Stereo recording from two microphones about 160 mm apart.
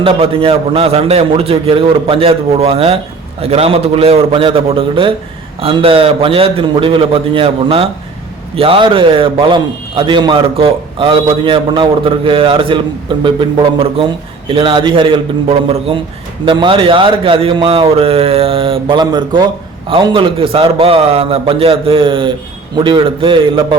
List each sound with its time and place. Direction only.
0.0 s a man's voice: 35° right (ahead or behind)